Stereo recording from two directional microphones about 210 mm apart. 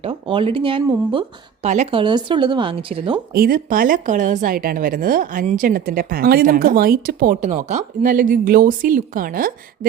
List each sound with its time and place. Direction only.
0.0 s speech: 25° right (ahead or behind)
3.3 s speech: 45° right (ahead or behind)